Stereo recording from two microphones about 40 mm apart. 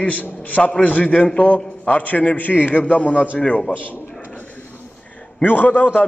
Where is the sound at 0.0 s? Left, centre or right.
Left.